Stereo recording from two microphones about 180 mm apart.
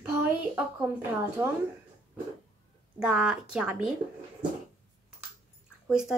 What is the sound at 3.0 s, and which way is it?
Speech, 5° right (ahead or behind).